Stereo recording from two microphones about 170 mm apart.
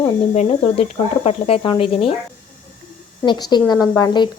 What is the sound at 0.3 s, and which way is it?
Speech, 35° left (ahead or behind).